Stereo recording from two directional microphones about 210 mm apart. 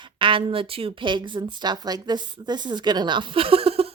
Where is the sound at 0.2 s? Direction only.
25° right (ahead or behind).